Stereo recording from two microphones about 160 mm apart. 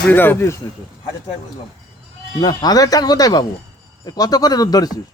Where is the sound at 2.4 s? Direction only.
25° left (ahead or behind).